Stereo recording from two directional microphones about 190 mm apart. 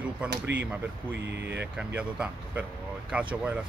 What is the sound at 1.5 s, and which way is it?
Speech, 5° right (ahead or behind).